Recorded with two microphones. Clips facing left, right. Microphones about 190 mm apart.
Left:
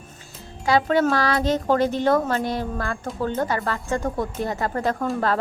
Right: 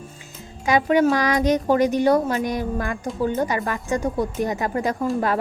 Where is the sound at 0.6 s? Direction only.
15° right (ahead or behind).